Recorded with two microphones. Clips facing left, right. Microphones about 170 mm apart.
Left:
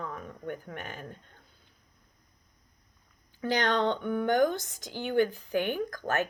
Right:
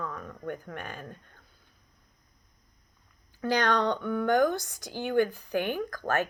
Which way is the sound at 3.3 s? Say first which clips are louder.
Right 1 dB; 20° left (ahead or behind).